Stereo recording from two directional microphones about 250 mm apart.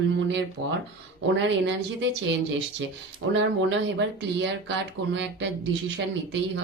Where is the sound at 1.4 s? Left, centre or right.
Right.